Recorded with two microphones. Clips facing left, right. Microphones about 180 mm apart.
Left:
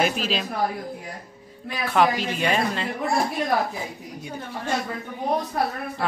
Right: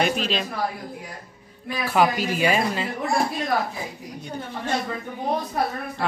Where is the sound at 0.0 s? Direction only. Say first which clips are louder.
Even; 5° left (ahead or behind).